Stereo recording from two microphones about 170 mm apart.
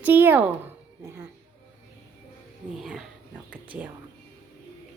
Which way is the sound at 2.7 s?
5° right (ahead or behind).